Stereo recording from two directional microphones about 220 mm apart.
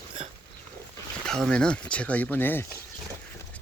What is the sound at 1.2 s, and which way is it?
Speech, centre (ahead or behind).